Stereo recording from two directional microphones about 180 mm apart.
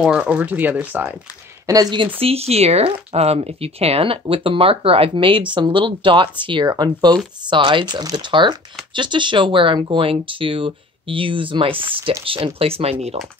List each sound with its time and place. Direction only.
0.0 s speech: 5° right (ahead or behind)
1.7 s speech: 20° right (ahead or behind)
2.1 s speech: 35° right (ahead or behind)